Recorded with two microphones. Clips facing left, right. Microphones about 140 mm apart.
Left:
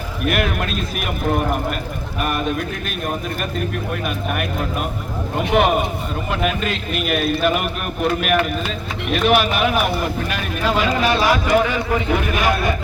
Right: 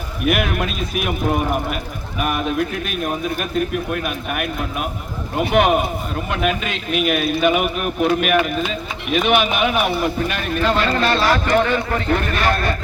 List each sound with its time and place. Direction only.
0.3 s a man's voice: centre (ahead or behind)